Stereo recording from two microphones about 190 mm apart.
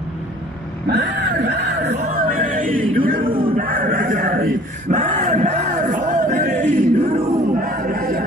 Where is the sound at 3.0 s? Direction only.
50° right (ahead or behind).